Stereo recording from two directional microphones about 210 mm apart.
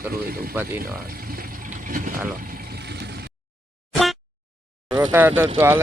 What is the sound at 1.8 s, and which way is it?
Speech, 40° right (ahead or behind).